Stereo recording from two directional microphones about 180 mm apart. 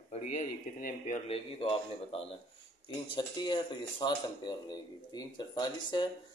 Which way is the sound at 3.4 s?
25° left (ahead or behind).